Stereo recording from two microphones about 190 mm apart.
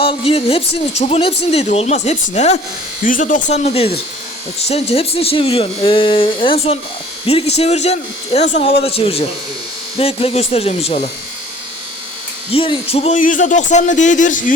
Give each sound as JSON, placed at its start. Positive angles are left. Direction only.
{"t": 0.0, "sound": "speech", "side_deg": 30}
{"t": 12.5, "sound": "speech", "side_deg": 30}
{"t": 13.1, "sound": "speech", "side_deg": 45}